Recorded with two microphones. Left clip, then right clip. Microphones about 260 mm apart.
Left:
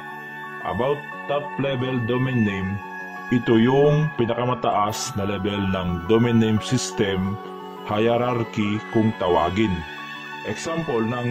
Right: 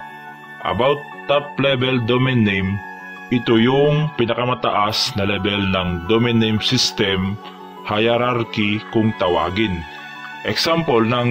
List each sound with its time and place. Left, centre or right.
0.7 s a man's voice: centre
10.4 s a man's voice: centre